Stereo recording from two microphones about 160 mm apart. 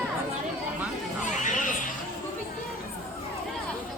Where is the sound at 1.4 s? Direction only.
55° left (ahead or behind).